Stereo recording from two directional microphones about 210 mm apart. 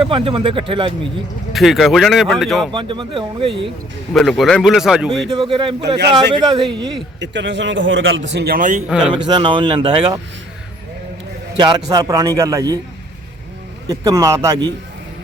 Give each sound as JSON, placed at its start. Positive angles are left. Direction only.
{"t": 0.0, "sound": "speech", "side_deg": -25}
{"t": 1.5, "sound": "speech", "side_deg": 0}
{"t": 2.7, "sound": "speech", "side_deg": -20}
{"t": 4.1, "sound": "speech", "side_deg": 0}
{"t": 5.3, "sound": "speech", "side_deg": -25}
{"t": 7.2, "sound": "a man's voice", "side_deg": -55}
{"t": 8.9, "sound": "speech", "side_deg": -5}
{"t": 9.1, "sound": "speech", "side_deg": -20}
{"t": 11.5, "sound": "a man's voice", "side_deg": -20}
{"t": 13.8, "sound": "speech", "side_deg": -15}